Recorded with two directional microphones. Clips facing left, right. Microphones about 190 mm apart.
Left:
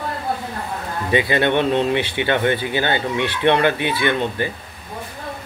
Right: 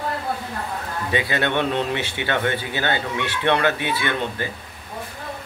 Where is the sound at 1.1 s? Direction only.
20° left (ahead or behind).